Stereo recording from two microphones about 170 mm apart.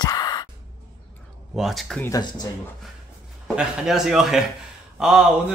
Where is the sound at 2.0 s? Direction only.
20° left (ahead or behind).